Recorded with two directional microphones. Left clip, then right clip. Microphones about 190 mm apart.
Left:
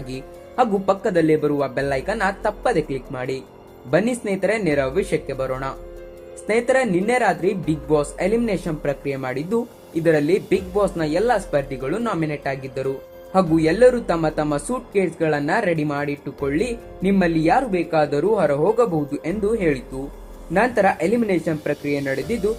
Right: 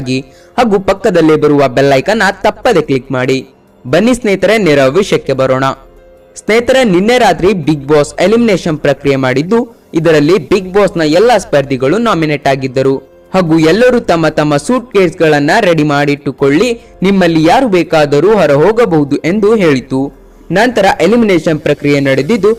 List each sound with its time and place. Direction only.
0.0 s a man's voice: 35° right (ahead or behind)